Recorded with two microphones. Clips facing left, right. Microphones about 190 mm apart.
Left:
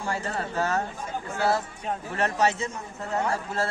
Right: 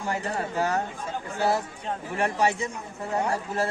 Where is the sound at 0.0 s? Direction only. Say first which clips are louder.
Right 1 dB; 20° right (ahead or behind).